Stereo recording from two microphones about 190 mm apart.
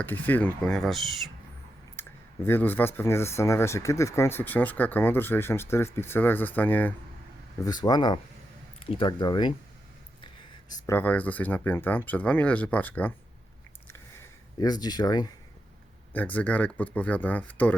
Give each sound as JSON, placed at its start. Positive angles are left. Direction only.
{"t": 0.0, "sound": "speech", "side_deg": 10}
{"t": 2.0, "sound": "speech", "side_deg": 10}
{"t": 7.6, "sound": "speech", "side_deg": 20}
{"t": 10.7, "sound": "speech", "side_deg": 15}
{"t": 14.6, "sound": "speech", "side_deg": 20}
{"t": 16.1, "sound": "speech", "side_deg": 10}